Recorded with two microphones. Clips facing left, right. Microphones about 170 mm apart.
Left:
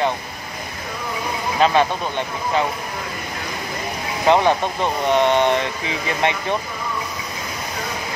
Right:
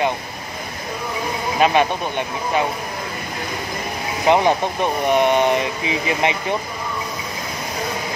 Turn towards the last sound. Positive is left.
turn(degrees=-15)  # may be behind; listen again after turning